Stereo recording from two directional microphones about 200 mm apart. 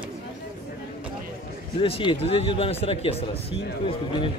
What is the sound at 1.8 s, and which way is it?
A man's voice, 25° left (ahead or behind).